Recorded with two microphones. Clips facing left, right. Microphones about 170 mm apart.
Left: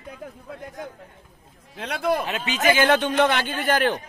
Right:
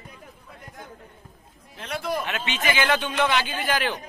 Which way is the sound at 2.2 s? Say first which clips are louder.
Left 5 dB; 35° left (ahead or behind).